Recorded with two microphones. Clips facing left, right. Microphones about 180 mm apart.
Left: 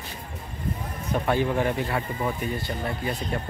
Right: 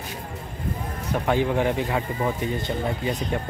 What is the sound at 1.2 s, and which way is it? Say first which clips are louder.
Speech: right 2 dB; 15° right (ahead or behind).